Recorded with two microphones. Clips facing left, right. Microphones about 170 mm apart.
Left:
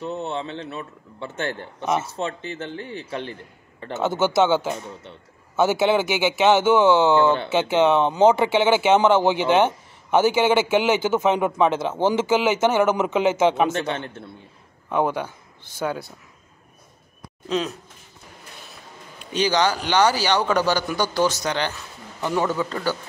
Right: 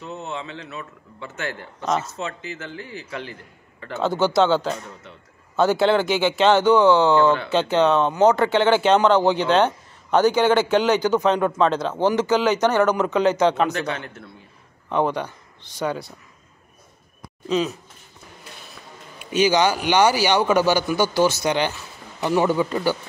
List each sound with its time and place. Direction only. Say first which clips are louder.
0.0 s a man's voice: left 4 dB; 30° left (ahead or behind)
4.3 s speech: even; 5° left (ahead or behind)
4.6 s a man's voice: right 1 dB; 20° left (ahead or behind)
5.6 s speech: right 1 dB; 5° left (ahead or behind)
6.6 s a man's voice: right 1 dB; 20° left (ahead or behind)
8.3 s speech: even; 10° left (ahead or behind)
9.2 s a man's voice: even; 20° left (ahead or behind)
10.1 s speech: right 1 dB; 5° left (ahead or behind)
11.0 s a man's voice: right 1 dB; 20° left (ahead or behind)
14.9 s speech: even; 5° left (ahead or behind)
17.5 s speech: right 3 dB; centre (ahead or behind)
19.1 s a man's voice: right 3 dB; 10° right (ahead or behind)